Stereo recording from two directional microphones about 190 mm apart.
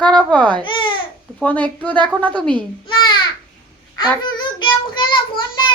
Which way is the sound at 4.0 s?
25° left (ahead or behind).